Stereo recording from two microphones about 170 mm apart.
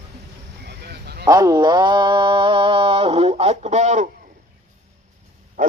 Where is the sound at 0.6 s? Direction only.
75° right (ahead or behind).